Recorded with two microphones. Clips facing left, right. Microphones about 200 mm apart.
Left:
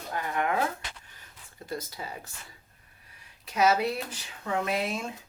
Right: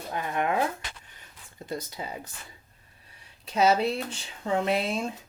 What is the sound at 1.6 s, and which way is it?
Speech, 20° right (ahead or behind).